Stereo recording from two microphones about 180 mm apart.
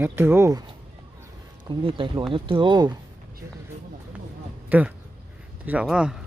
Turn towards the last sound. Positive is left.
turn(degrees=-5)  # may be behind; listen again after turning